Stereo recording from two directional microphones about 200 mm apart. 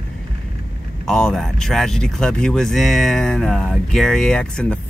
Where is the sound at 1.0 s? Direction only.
Centre (ahead or behind).